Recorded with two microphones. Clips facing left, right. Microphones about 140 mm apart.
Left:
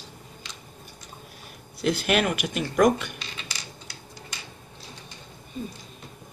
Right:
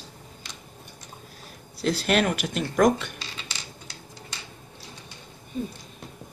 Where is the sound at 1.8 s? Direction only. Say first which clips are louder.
Even; centre (ahead or behind).